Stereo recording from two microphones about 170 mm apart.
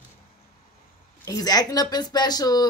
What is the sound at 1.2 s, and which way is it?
Speech, 20° left (ahead or behind).